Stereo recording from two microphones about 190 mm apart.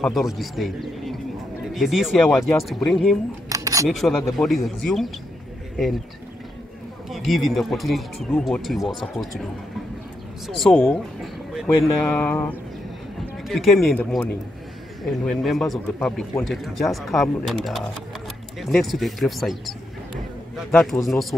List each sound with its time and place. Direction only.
0.0 s speech: centre (ahead or behind)
3.4 s camera: 15° right (ahead or behind)
3.9 s speech: centre (ahead or behind)
7.1 s speech: centre (ahead or behind)
10.4 s speech: centre (ahead or behind)